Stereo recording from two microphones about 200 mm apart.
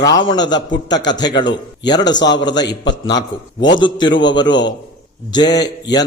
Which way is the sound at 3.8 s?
20° left (ahead or behind).